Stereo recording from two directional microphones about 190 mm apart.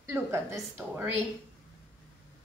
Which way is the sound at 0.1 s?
15° right (ahead or behind).